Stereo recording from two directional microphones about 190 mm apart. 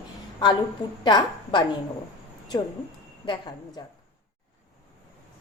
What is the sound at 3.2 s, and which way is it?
Speech, 25° left (ahead or behind).